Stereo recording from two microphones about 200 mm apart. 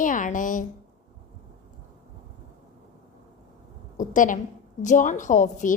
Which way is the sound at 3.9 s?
40° left (ahead or behind).